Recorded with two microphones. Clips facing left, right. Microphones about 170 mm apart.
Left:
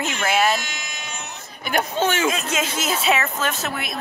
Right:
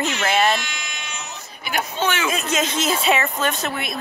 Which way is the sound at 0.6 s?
45° left (ahead or behind).